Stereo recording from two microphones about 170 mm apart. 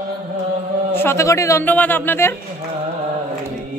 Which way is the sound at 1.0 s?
15° left (ahead or behind).